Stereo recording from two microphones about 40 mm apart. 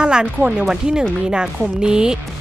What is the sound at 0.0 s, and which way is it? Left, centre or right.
A woman's voice, centre.